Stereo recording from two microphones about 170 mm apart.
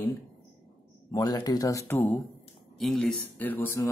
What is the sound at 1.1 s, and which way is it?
Speech, 20° left (ahead or behind).